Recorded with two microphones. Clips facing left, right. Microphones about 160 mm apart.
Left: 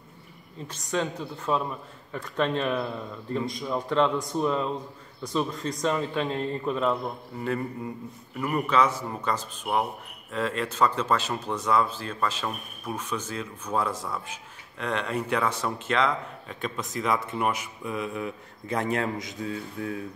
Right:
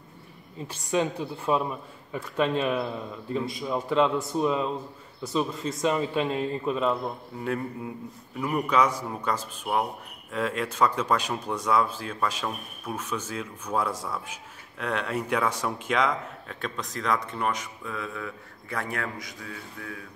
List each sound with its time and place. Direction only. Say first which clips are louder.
0.7 s a man's voice: right 3 dB; 10° right (ahead or behind)
16.1 s speech: even; centre (ahead or behind); by 20.1 s 25° left (ahead or behind)